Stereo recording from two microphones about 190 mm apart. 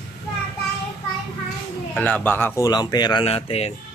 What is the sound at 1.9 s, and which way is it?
Speech, 10° left (ahead or behind).